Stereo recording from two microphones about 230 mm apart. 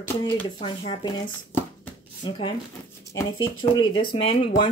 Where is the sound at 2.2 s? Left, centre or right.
Left.